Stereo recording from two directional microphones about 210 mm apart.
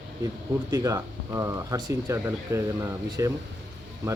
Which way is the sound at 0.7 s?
15° right (ahead or behind).